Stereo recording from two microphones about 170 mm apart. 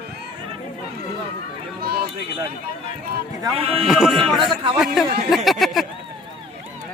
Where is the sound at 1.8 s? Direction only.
60° right (ahead or behind).